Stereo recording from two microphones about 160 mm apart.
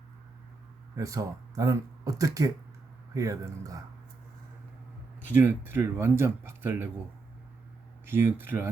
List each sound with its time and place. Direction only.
0.9 s speech: 20° right (ahead or behind)
5.3 s speech: 15° right (ahead or behind)
8.0 s speech: 15° right (ahead or behind)